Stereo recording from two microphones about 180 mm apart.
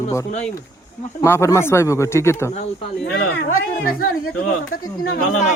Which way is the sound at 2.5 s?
35° left (ahead or behind).